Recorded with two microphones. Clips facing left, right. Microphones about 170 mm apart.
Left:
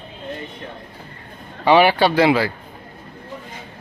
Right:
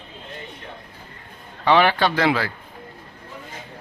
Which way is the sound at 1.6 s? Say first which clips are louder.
Left 4 dB; 10° left (ahead or behind).